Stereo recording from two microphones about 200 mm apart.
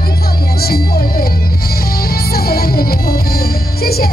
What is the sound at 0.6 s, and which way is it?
Music, 50° left (ahead or behind).